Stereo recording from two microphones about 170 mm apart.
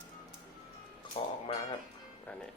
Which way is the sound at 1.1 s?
30° left (ahead or behind).